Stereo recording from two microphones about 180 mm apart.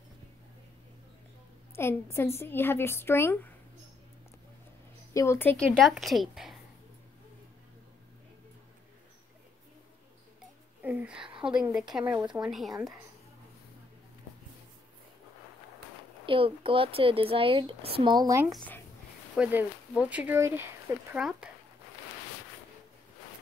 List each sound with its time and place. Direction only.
1.8 s a woman's voice: 15° left (ahead or behind)
5.1 s a woman's voice: 15° left (ahead or behind); by 6.6 s centre (ahead or behind)
10.8 s a sound: 10° right (ahead or behind)
11.4 s a woman's voice: 5° right (ahead or behind)
16.3 s speech: 30° right (ahead or behind)
19.3 s speech: 5° right (ahead or behind)